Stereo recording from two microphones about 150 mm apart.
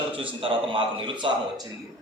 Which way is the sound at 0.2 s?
35° right (ahead or behind).